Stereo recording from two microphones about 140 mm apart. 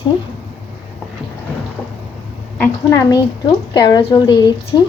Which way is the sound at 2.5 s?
15° left (ahead or behind).